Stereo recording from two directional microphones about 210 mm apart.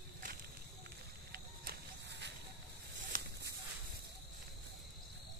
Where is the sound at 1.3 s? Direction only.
45° right (ahead or behind).